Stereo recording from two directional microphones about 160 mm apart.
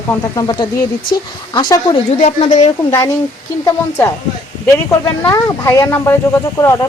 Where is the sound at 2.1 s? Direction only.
50° left (ahead or behind).